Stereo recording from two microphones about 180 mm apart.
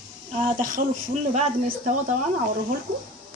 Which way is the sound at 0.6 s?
50° right (ahead or behind).